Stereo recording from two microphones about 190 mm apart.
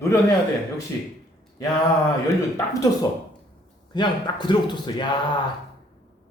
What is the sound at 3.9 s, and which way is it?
A man's voice, 25° left (ahead or behind).